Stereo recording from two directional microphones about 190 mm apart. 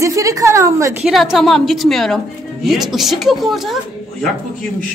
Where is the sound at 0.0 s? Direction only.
15° right (ahead or behind).